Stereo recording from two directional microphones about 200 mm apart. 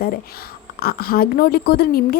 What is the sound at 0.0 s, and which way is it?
A woman's voice, 50° left (ahead or behind).